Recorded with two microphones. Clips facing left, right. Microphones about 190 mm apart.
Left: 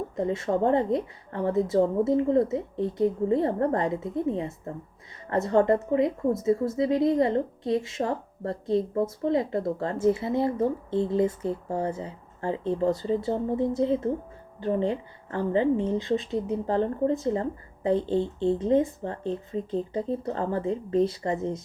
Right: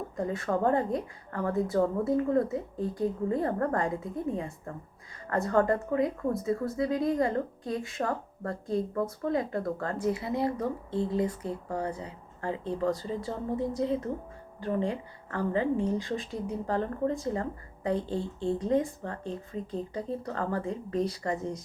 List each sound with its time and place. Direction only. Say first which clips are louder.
0.2 s speech: left 3 dB; 25° left (ahead or behind)